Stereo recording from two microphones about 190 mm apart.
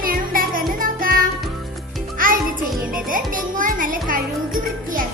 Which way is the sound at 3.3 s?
45° right (ahead or behind).